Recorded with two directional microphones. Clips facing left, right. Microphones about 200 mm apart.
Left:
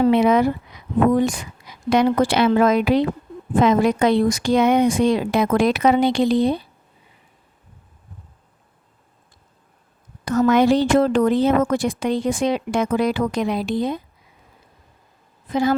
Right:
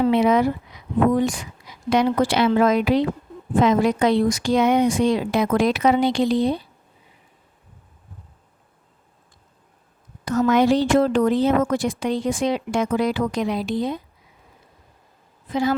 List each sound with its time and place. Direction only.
0.0 s speech: 55° left (ahead or behind)
10.2 s speech: 55° left (ahead or behind)